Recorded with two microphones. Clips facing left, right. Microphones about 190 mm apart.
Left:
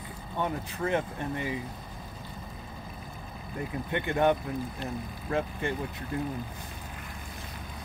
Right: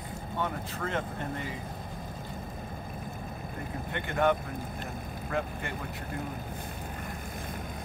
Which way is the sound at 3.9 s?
20° left (ahead or behind).